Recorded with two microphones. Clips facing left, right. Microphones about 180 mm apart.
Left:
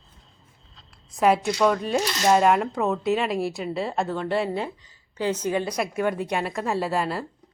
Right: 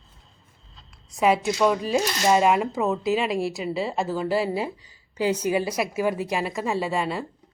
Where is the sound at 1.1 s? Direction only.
Centre (ahead or behind).